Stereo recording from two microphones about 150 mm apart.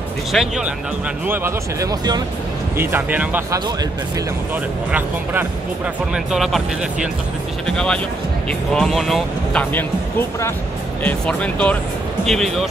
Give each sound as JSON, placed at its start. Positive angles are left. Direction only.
{"t": 0.3, "sound": "speech", "side_deg": 0}
{"t": 1.2, "sound": "speech", "side_deg": -15}
{"t": 2.8, "sound": "speech", "side_deg": -15}
{"t": 4.9, "sound": "speech", "side_deg": -10}
{"t": 6.1, "sound": "speech", "side_deg": 0}